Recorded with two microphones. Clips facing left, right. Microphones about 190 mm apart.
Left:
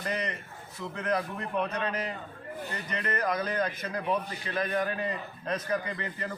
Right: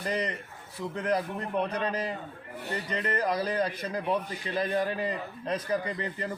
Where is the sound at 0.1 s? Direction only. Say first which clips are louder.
Right 3 dB; 30° right (ahead or behind).